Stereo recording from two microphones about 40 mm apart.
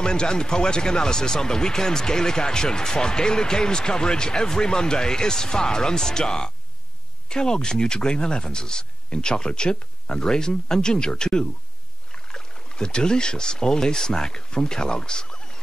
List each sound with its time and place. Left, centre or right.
0.0 s speech: left